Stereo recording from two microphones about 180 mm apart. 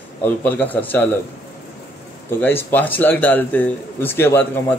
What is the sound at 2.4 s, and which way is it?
A man's voice, 10° left (ahead or behind).